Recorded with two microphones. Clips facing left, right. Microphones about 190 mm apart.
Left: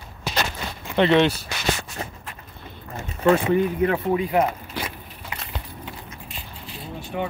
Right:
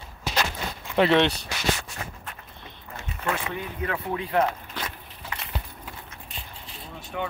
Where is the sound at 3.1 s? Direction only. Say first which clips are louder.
Left 12 dB; 35° left (ahead or behind).